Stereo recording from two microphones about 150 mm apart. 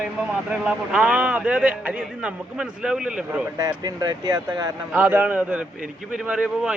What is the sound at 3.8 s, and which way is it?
Speech, 25° right (ahead or behind).